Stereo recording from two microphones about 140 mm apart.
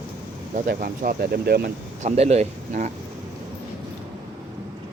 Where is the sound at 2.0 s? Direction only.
50° right (ahead or behind).